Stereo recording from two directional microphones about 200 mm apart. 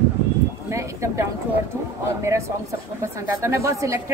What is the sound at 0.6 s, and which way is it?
Speech, 15° right (ahead or behind).